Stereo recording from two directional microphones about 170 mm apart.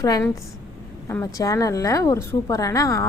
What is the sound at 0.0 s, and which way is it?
A woman's voice, 20° left (ahead or behind).